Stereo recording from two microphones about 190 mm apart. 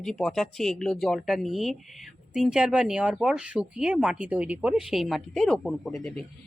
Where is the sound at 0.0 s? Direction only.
5° left (ahead or behind).